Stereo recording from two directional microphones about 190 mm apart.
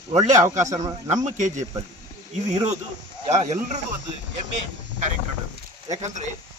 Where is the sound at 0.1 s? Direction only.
35° right (ahead or behind).